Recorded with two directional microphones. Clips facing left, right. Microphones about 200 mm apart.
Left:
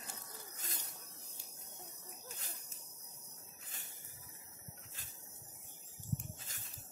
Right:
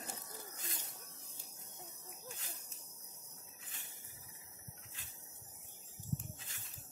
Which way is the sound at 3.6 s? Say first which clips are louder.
Left 1 dB; 40° left (ahead or behind).